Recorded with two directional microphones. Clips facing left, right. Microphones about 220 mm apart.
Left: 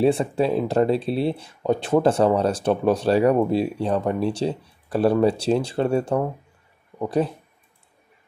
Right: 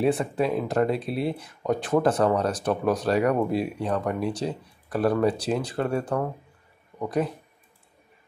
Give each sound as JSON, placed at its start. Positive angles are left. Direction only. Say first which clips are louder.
{"t": 0.0, "sound": "speech", "louder": "left 4 dB", "side_deg": 30}